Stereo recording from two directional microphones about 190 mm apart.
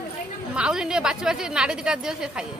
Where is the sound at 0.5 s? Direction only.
5° right (ahead or behind).